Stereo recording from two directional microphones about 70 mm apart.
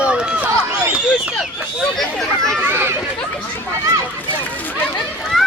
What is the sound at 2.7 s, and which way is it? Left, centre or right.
Children playing, right.